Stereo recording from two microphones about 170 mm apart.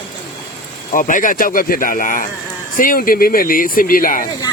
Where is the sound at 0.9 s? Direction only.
50° left (ahead or behind).